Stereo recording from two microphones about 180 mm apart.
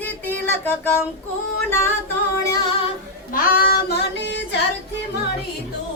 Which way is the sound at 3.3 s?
55° left (ahead or behind).